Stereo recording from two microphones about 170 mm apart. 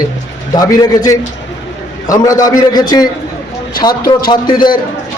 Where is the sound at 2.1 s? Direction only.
20° left (ahead or behind).